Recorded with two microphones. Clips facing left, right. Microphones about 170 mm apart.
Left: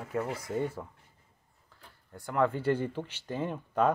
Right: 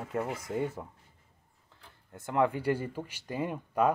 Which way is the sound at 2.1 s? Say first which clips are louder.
Even; 20° right (ahead or behind).